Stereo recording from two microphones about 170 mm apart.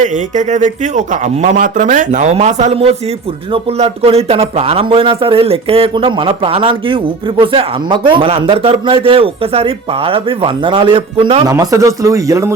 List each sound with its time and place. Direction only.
0.0 s a man's voice: 45° right (ahead or behind)
11.4 s speech: 20° right (ahead or behind)